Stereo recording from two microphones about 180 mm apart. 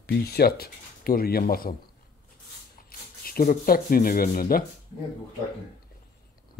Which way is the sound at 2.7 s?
55° left (ahead or behind).